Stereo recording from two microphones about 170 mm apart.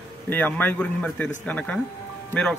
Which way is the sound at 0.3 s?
10° left (ahead or behind).